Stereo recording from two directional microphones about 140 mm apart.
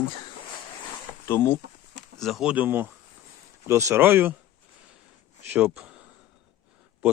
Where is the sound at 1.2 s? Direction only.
15° left (ahead or behind).